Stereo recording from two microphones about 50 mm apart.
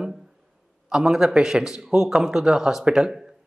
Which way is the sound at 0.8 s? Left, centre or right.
Centre.